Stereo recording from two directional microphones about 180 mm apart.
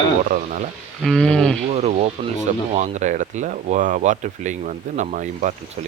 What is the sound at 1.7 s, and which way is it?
Speech, 35° right (ahead or behind).